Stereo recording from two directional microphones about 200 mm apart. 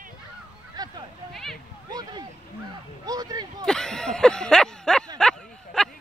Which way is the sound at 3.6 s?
5° left (ahead or behind).